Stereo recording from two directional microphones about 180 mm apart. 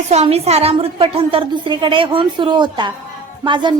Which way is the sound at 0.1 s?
35° right (ahead or behind).